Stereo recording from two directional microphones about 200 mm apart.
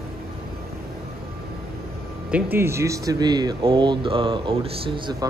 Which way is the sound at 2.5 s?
10° right (ahead or behind).